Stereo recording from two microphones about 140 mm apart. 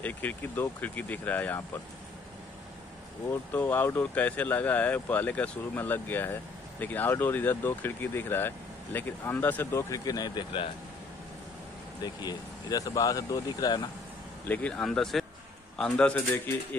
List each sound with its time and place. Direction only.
0.0 s speech: 10° left (ahead or behind)
3.3 s speech: 15° left (ahead or behind); by 10.7 s 35° left (ahead or behind)
12.0 s speech: 30° left (ahead or behind)
14.4 s speech: 10° left (ahead or behind)